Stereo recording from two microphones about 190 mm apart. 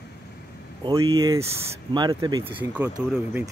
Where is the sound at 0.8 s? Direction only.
15° right (ahead or behind).